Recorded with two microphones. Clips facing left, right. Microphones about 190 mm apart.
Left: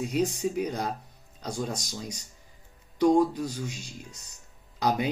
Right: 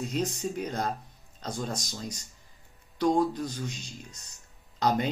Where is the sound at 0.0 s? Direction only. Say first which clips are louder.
Left 4 dB; 10° left (ahead or behind).